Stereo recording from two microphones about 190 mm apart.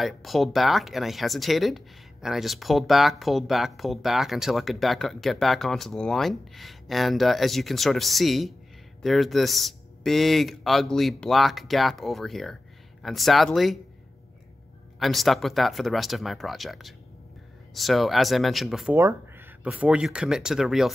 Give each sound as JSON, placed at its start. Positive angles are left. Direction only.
{"t": 0.0, "sound": "speech", "side_deg": 0}
{"t": 15.0, "sound": "speech", "side_deg": 0}
{"t": 18.9, "sound": "speech", "side_deg": -15}